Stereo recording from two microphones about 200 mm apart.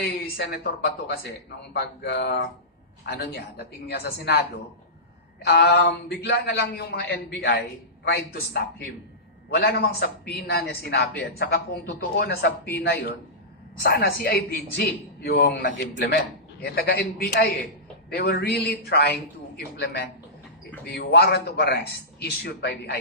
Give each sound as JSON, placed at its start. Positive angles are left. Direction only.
{"t": 0.0, "sound": "a man's voice", "side_deg": 55}